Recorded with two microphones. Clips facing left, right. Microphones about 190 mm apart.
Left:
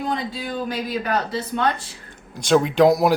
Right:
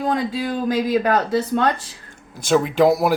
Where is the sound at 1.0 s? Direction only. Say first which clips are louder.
Right 5 dB; 45° right (ahead or behind).